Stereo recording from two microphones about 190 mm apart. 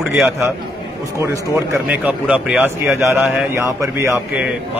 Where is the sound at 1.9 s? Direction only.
5° right (ahead or behind).